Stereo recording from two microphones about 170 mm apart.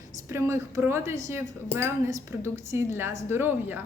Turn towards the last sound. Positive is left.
turn(degrees=-10)  # may be behind; listen again after turning